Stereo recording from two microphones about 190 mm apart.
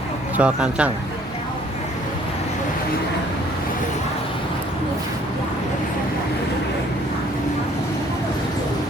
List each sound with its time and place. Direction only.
0.3 s speech: 5° right (ahead or behind)